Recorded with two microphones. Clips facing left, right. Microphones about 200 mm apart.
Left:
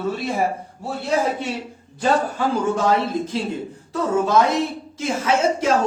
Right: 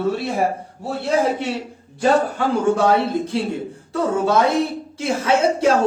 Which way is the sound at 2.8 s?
30° right (ahead or behind).